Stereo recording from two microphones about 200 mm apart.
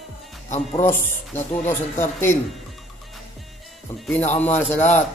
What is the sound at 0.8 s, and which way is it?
A man's voice, 10° left (ahead or behind).